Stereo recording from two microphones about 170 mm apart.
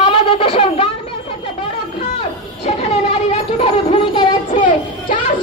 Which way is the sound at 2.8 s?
35° left (ahead or behind).